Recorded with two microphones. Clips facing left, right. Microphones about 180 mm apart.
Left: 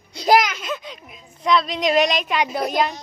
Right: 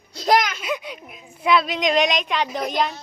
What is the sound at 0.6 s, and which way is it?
A woman's voice, 10° right (ahead or behind).